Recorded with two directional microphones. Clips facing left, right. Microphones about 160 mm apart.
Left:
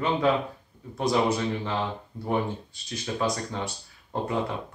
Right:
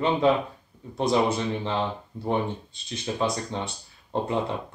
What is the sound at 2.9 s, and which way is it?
Speech, 25° right (ahead or behind).